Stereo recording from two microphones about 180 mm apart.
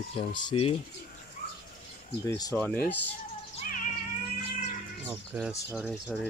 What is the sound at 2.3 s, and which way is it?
Speech, 20° left (ahead or behind).